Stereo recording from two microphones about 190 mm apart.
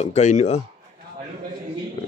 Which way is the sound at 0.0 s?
35° left (ahead or behind).